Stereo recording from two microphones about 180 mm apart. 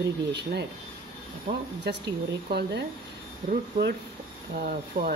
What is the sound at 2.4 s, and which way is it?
Speech, 65° right (ahead or behind).